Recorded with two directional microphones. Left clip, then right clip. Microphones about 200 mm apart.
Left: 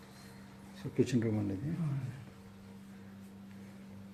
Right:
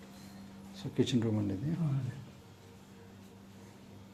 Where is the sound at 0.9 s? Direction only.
Centre (ahead or behind).